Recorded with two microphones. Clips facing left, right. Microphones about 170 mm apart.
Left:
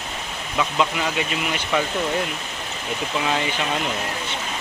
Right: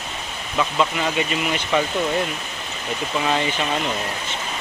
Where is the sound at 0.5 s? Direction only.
5° left (ahead or behind).